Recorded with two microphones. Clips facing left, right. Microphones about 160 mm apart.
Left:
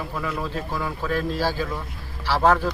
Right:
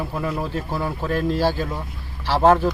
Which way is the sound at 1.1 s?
15° right (ahead or behind).